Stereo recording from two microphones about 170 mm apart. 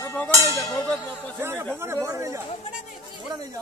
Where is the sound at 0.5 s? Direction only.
15° left (ahead or behind).